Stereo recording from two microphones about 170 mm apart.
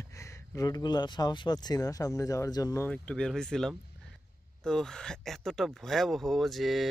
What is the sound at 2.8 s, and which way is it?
Speech, 5° left (ahead or behind).